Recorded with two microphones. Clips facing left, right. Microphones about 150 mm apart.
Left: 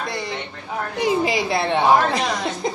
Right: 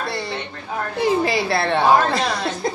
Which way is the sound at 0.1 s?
15° left (ahead or behind).